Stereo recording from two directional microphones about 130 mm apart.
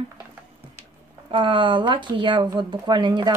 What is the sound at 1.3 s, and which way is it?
Speech, 40° right (ahead or behind).